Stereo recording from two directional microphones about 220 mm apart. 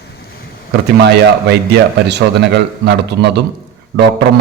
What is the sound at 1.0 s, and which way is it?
A man's voice, 50° right (ahead or behind).